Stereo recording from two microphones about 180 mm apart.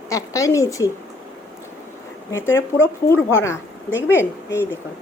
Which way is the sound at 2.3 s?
15° left (ahead or behind).